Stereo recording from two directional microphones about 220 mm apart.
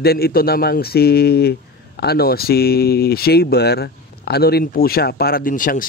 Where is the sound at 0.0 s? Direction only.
45° left (ahead or behind).